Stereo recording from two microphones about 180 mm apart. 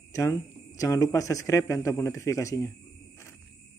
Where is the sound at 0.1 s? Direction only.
20° left (ahead or behind).